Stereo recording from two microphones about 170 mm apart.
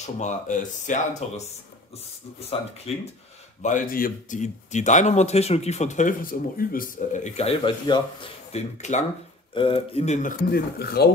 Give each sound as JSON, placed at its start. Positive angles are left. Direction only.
{"t": 0.0, "sound": "speech", "side_deg": 45}
{"t": 2.9, "sound": "speech", "side_deg": 35}
{"t": 3.6, "sound": "speech", "side_deg": 50}
{"t": 9.5, "sound": "speech", "side_deg": 30}
{"t": 10.5, "sound": "speech", "side_deg": 70}